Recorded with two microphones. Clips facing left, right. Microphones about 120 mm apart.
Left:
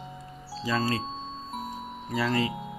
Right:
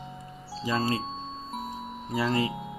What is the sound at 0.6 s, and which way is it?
Music, 20° right (ahead or behind).